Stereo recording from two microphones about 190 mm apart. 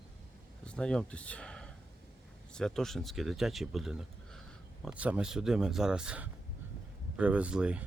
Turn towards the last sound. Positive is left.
turn(degrees=-5)  # may be behind; listen again after turning